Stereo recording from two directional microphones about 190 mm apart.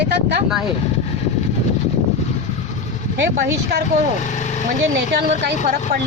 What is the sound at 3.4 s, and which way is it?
Speech, 65° right (ahead or behind).